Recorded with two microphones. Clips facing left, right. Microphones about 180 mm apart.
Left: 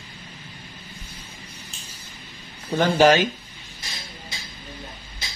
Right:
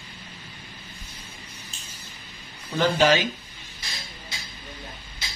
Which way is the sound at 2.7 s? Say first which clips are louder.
Left 4 dB; 55° left (ahead or behind).